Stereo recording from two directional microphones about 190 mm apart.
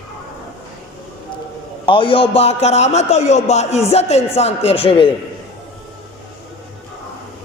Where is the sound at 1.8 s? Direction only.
25° left (ahead or behind).